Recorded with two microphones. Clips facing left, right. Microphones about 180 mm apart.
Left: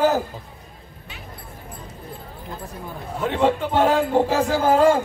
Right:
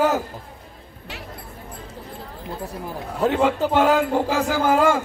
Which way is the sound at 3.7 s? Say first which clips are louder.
Right 1 dB; 35° left (ahead or behind).